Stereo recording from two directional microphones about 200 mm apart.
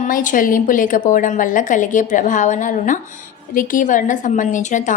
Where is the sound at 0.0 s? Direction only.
40° left (ahead or behind).